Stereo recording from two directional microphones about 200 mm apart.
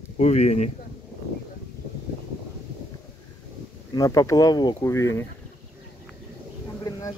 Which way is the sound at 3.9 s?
15° left (ahead or behind).